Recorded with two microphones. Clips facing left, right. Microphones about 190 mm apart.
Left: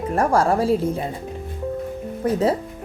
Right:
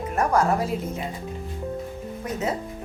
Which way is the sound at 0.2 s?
30° left (ahead or behind).